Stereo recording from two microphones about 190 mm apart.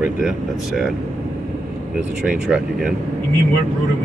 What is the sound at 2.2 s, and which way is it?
Speech, 5° right (ahead or behind).